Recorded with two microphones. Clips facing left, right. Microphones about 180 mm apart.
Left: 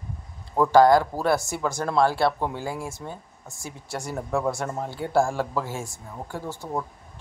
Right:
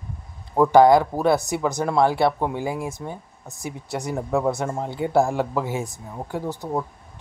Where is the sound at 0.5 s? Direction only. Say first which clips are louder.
Right 3 dB; 20° right (ahead or behind).